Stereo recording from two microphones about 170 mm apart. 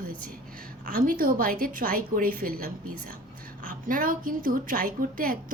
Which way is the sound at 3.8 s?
55° right (ahead or behind).